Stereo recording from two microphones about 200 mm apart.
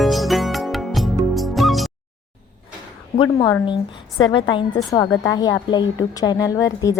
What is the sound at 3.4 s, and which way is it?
A woman's voice, 20° left (ahead or behind).